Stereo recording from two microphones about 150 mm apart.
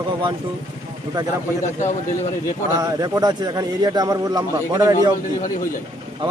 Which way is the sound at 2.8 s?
25° right (ahead or behind).